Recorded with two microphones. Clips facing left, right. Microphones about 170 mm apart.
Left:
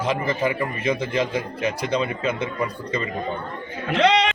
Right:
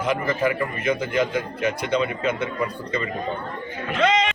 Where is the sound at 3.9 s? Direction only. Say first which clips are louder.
Left 2 dB; 75° left (ahead or behind).